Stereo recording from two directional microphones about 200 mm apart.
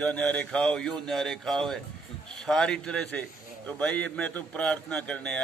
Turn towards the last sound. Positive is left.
turn(degrees=5)  # may be behind; listen again after turning